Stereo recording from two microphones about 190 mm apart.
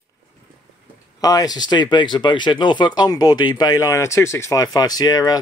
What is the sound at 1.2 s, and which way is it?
Speech, 20° left (ahead or behind).